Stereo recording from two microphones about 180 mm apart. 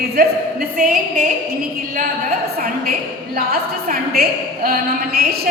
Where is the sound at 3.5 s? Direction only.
55° right (ahead or behind).